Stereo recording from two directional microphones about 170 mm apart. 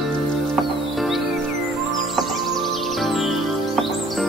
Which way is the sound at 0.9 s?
Centre (ahead or behind).